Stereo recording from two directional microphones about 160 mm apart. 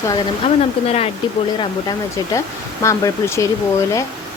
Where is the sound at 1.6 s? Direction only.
25° left (ahead or behind).